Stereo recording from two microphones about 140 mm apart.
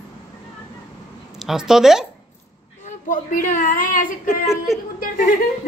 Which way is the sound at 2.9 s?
70° left (ahead or behind).